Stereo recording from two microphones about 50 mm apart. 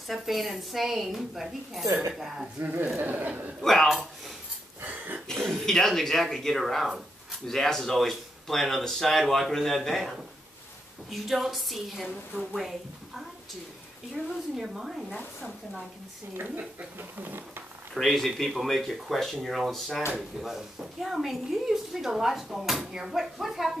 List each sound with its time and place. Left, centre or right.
0.1 s a woman's voice: centre
2.6 s a man's voice: right
3.6 s speech: centre
4.8 s throat clearing: right
5.3 s a woman's voice: centre
16.3 s a man's voice: right
18.0 s a woman's voice: centre